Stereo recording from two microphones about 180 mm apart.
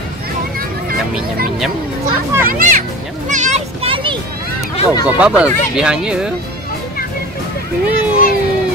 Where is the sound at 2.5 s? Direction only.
50° right (ahead or behind).